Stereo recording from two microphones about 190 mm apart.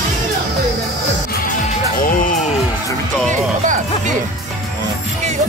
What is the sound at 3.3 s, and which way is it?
Music, 40° right (ahead or behind).